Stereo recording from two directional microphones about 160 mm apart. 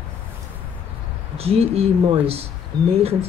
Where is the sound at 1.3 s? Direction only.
40° right (ahead or behind).